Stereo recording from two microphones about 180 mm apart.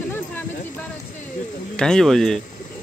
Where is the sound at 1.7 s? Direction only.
5° left (ahead or behind).